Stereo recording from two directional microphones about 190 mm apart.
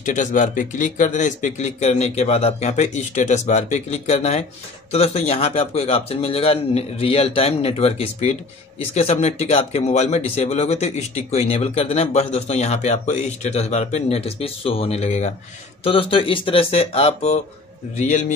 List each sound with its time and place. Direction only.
0.0 s a man's voice: 40° left (ahead or behind)